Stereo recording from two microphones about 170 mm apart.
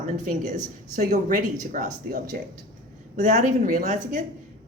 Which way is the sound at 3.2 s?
45° right (ahead or behind).